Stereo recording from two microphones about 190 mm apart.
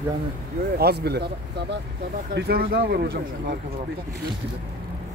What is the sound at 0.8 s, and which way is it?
Speech, 60° right (ahead or behind).